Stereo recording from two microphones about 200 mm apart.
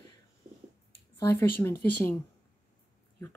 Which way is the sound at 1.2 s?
15° left (ahead or behind).